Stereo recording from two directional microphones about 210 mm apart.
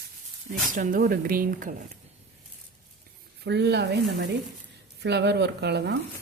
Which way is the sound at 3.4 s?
50° right (ahead or behind).